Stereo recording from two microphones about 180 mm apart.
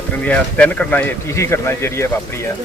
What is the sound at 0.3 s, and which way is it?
Speech, 10° left (ahead or behind).